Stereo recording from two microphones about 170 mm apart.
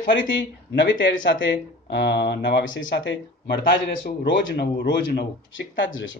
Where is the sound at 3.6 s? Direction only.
60° left (ahead or behind).